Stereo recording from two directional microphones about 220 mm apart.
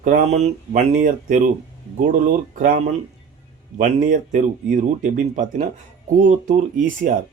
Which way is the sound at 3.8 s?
35° right (ahead or behind).